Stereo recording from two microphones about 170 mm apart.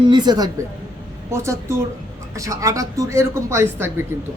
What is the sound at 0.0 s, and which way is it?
A woman's voice, 25° right (ahead or behind).